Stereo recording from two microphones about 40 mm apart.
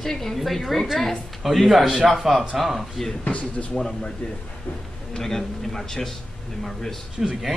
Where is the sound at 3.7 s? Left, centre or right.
Centre.